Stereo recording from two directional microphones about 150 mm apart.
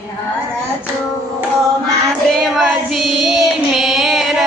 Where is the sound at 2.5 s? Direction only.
Centre (ahead or behind).